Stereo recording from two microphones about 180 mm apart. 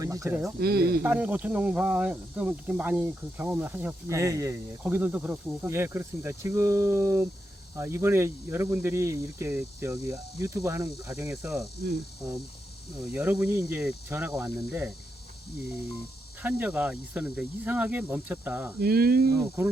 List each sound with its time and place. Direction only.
0.0 s a sound: 20° right (ahead or behind)
0.6 s speech: 60° right (ahead or behind)
1.0 s speech: 10° right (ahead or behind)
13.1 s speech: 10° right (ahead or behind)
16.4 s speech: 10° right (ahead or behind)
18.8 s speech: 60° right (ahead or behind)
19.6 s speech: 10° right (ahead or behind)